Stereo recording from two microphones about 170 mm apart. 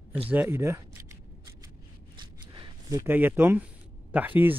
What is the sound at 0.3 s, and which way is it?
Speech, 10° right (ahead or behind).